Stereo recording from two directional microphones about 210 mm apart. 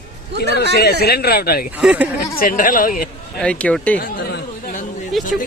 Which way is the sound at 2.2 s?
40° left (ahead or behind).